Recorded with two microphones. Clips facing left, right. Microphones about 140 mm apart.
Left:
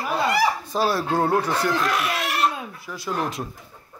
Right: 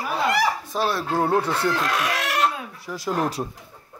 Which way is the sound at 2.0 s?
90° right.